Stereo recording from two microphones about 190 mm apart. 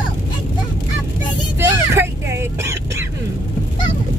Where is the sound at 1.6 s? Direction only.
15° right (ahead or behind).